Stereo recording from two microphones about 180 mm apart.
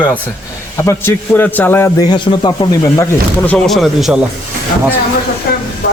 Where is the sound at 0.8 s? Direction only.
10° left (ahead or behind).